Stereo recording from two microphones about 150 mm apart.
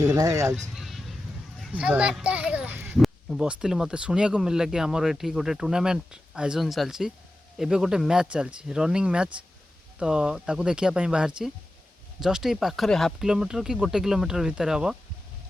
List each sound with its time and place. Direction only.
0.0 s speech: 25° right (ahead or behind)
0.8 s a sound: centre (ahead or behind)
1.6 s speech: 5° right (ahead or behind)